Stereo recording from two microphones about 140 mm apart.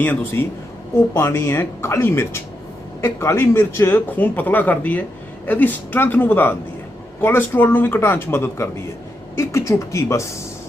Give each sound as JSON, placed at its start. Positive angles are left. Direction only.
{"t": 0.0, "sound": "speech", "side_deg": 15}